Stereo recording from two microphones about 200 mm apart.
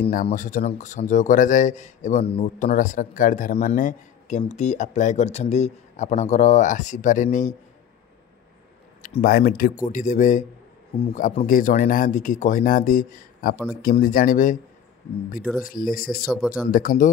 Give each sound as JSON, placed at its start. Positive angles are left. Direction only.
{"t": 0.1, "sound": "speech", "side_deg": 40}
{"t": 9.0, "sound": "speech", "side_deg": 45}
{"t": 15.6, "sound": "speech", "side_deg": 45}
{"t": 16.3, "sound": "speech", "side_deg": 0}
{"t": 16.7, "sound": "speech", "side_deg": 45}